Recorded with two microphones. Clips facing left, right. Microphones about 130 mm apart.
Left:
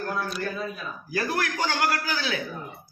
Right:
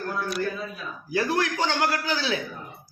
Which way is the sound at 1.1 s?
20° right (ahead or behind).